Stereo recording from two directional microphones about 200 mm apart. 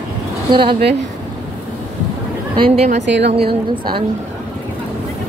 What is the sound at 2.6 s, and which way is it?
A woman's voice, 30° right (ahead or behind).